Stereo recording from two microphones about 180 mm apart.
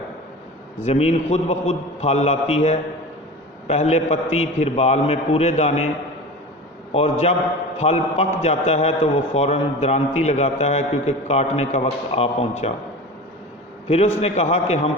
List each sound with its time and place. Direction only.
0.9 s a man's voice: 35° left (ahead or behind)
6.9 s a man's voice: 35° left (ahead or behind)
13.8 s a man's voice: 35° left (ahead or behind)